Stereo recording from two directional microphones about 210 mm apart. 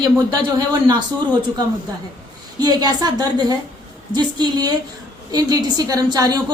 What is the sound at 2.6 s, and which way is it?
A woman's voice, 20° right (ahead or behind).